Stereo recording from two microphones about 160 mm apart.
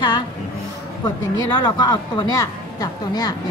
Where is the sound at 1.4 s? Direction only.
30° left (ahead or behind).